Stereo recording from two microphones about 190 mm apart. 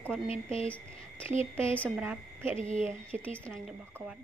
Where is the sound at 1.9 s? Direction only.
10° right (ahead or behind).